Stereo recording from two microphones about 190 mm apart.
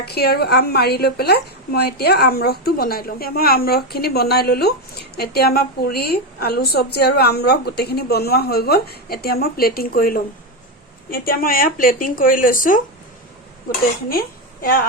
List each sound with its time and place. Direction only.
0.0 s a woman's voice: 55° left (ahead or behind)